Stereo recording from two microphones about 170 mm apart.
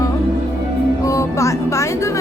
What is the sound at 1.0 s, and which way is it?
Music, 20° left (ahead or behind).